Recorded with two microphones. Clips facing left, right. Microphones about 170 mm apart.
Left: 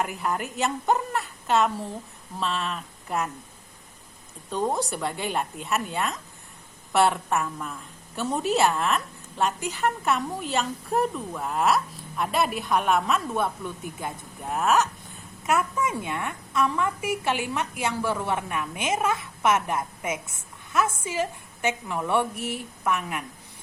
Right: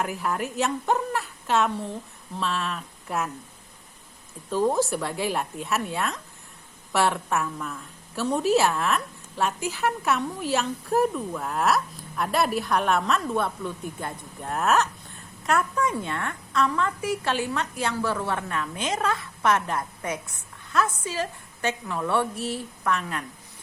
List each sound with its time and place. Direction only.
0.0 s a woman's voice: centre (ahead or behind)
4.5 s a woman's voice: centre (ahead or behind)